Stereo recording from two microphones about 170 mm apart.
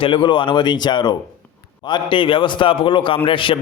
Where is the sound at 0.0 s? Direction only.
30° left (ahead or behind).